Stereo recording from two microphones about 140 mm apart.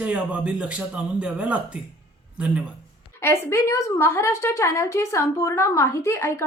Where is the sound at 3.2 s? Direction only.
20° left (ahead or behind).